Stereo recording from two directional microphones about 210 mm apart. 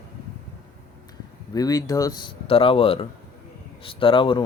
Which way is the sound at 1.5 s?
15° left (ahead or behind).